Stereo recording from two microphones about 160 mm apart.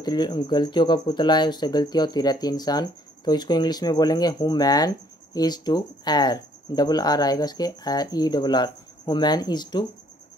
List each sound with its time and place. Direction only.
0.0 s speech: 25° left (ahead or behind)